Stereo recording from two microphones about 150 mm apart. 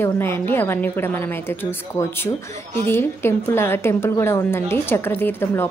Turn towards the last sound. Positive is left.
turn(degrees=15)  # may be behind; listen again after turning